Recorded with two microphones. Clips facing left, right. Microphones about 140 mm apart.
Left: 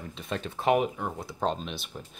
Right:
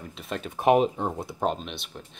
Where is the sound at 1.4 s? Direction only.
5° right (ahead or behind).